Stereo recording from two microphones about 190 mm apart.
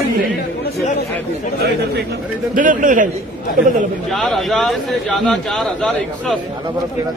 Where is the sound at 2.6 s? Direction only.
45° right (ahead or behind).